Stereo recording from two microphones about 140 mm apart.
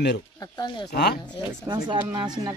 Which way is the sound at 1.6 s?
35° right (ahead or behind).